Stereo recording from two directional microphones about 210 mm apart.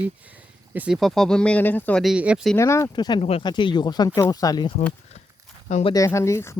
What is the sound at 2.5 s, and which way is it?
Speech, 15° left (ahead or behind).